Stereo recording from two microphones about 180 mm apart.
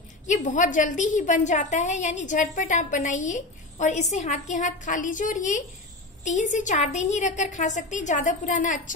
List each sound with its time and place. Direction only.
0.3 s a woman's voice: 45° left (ahead or behind)